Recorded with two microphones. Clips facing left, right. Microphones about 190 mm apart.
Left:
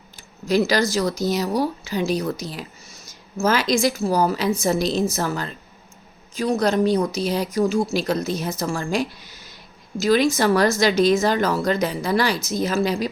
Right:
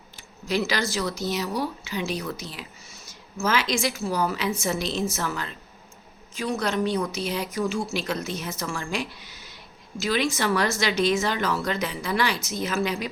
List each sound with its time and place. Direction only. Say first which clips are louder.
0.4 s speech: left 7 dB; 40° left (ahead or behind)